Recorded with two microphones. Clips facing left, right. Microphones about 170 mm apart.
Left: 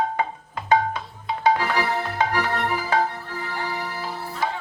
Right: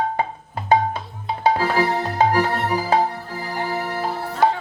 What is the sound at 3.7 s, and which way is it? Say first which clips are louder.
Music: right 6 dB; 50° right (ahead or behind).